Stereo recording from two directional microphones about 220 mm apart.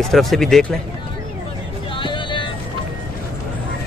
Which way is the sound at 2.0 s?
20° left (ahead or behind).